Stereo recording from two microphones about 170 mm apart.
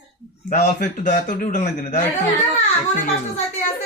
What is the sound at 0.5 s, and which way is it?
A man's voice, 55° left (ahead or behind).